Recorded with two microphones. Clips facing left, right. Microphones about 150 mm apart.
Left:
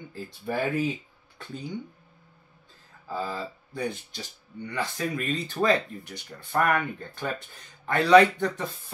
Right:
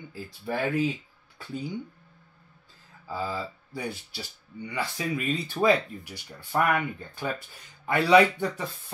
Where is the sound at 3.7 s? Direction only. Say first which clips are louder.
Left 5 dB; 10° right (ahead or behind).